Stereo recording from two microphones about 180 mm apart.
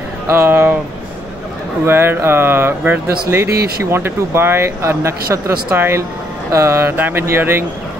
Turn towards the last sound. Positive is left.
turn(degrees=-15)  # may be behind; listen again after turning